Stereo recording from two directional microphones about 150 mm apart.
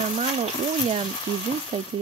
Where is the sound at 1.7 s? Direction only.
40° right (ahead or behind).